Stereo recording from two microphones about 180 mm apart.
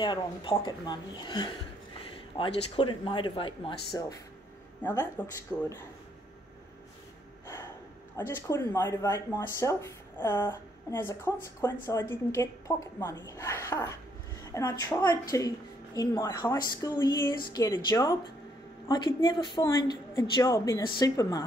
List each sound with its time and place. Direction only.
0.0 s speech: 25° left (ahead or behind)
4.8 s speech: 10° left (ahead or behind)
8.4 s speech: 15° left (ahead or behind)